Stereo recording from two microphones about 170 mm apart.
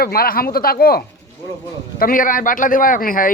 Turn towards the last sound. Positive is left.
turn(degrees=55)  # may be behind; listen again after turning